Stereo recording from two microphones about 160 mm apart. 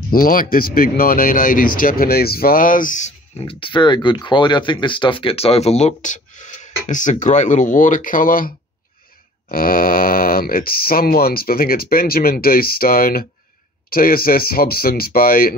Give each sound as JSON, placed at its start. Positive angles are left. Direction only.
{"t": 0.1, "sound": "speech", "side_deg": 65}
{"t": 3.3, "sound": "speech", "side_deg": 35}